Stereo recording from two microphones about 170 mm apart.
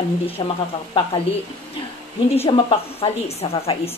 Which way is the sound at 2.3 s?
35° left (ahead or behind).